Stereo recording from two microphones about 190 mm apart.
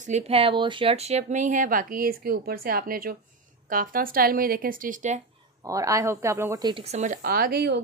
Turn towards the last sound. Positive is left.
turn(degrees=-60)  # may be behind; listen again after turning